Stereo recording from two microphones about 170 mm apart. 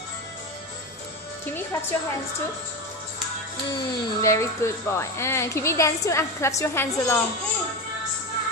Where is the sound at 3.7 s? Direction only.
15° left (ahead or behind).